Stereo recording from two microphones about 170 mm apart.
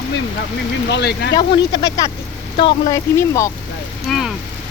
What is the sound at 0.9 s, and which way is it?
Speech, 85° left.